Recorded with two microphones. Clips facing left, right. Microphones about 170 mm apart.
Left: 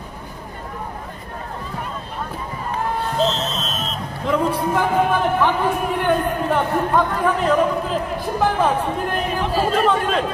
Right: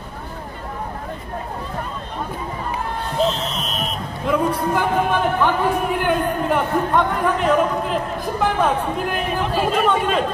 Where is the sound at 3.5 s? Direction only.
15° right (ahead or behind).